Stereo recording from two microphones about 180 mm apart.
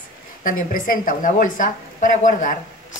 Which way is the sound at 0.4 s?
50° left (ahead or behind).